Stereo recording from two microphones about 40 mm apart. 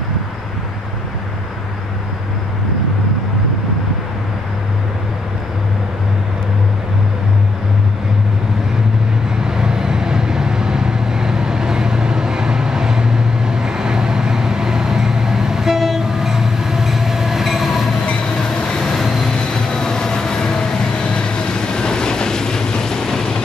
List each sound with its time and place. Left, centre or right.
9.5 s vehicle: centre
18.6 s vehicle: centre
19.0 s vehicle: centre
19.5 s train: centre
21.0 s vehicle: left